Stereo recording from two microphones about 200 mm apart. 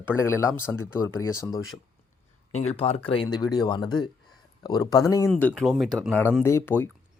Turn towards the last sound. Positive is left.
turn(degrees=10)  # may be behind; listen again after turning